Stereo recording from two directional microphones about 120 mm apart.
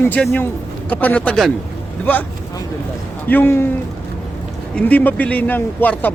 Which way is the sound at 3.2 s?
15° left (ahead or behind).